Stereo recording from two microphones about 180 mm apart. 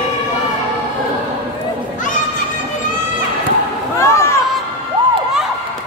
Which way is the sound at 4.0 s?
15° left (ahead or behind).